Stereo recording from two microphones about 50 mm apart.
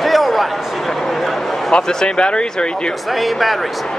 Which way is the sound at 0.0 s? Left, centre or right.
Centre.